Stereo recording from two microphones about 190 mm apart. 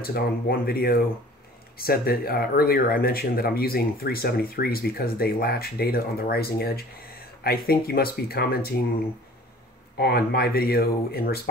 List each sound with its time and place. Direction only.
0.0 s speech: 55° left (ahead or behind)
9.9 s speech: 55° left (ahead or behind)